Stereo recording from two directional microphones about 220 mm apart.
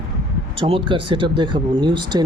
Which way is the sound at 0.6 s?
25° right (ahead or behind).